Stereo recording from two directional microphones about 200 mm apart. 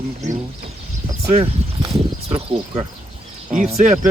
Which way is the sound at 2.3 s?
25° right (ahead or behind).